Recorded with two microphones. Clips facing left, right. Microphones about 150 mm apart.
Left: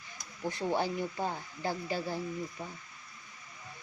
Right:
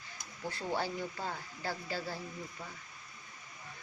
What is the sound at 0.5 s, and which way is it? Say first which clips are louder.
Speech: left 4 dB; 15° left (ahead or behind).